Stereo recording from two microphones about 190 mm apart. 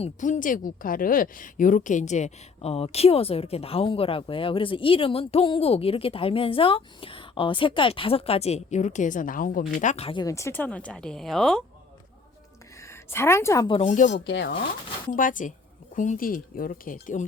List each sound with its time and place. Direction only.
0.0 s speech: 40° left (ahead or behind); by 11.6 s centre (ahead or behind)
12.9 s a woman's voice: 15° left (ahead or behind)
13.7 s speech: 30° left (ahead or behind)
14.1 s speech: 65° left (ahead or behind)
15.1 s speech: 45° left (ahead or behind)